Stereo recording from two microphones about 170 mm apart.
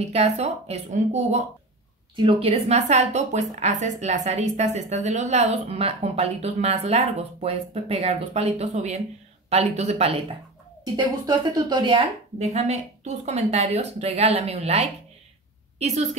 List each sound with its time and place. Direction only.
0.0 s a woman's voice: 40° right (ahead or behind)
2.1 s a woman's voice: 35° right (ahead or behind)
12.5 s a woman's voice: 40° right (ahead or behind)